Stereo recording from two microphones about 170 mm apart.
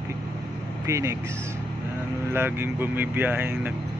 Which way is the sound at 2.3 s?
15° right (ahead or behind).